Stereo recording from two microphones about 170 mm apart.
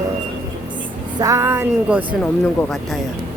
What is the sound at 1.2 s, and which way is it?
Music, 15° right (ahead or behind).